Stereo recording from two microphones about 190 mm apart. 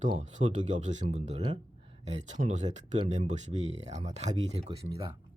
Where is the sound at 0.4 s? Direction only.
35° right (ahead or behind).